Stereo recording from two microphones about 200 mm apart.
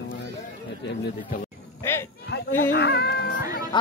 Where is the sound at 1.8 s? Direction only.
15° left (ahead or behind).